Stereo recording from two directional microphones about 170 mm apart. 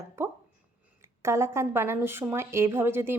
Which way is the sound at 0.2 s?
15° right (ahead or behind).